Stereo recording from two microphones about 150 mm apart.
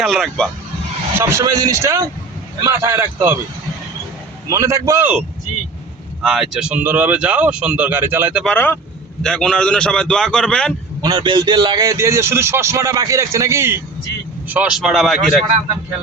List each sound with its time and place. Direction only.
0.0 s a man's voice: centre (ahead or behind)
1.2 s a man's voice: 20° right (ahead or behind)
4.4 s a man's voice: 20° right (ahead or behind)
6.2 s speech: 5° right (ahead or behind)
8.4 s a man's voice: 10° left (ahead or behind)
11.0 s a man's voice: 30° right (ahead or behind); by 15.4 s centre (ahead or behind)